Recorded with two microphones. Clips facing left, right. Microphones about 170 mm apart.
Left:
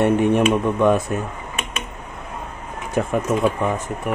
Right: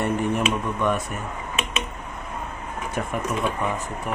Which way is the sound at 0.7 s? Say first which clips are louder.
Left 7 dB; 90° left.